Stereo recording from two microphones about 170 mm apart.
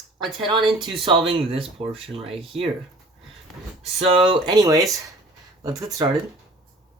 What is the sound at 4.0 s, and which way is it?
Speech, 35° right (ahead or behind).